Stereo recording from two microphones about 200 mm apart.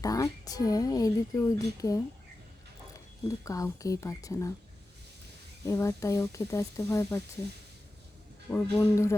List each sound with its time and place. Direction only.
0.0 s speech: 15° left (ahead or behind)
3.2 s speech: 15° left (ahead or behind)
5.6 s speech: 15° left (ahead or behind)
8.4 s speech: 10° left (ahead or behind)